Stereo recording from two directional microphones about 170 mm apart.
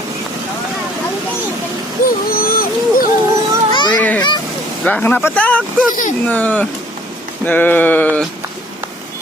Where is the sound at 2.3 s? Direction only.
60° left (ahead or behind).